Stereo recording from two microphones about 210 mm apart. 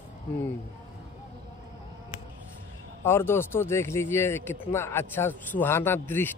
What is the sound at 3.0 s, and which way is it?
Speech, 10° left (ahead or behind).